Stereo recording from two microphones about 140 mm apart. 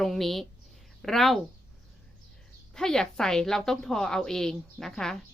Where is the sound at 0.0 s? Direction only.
Centre (ahead or behind).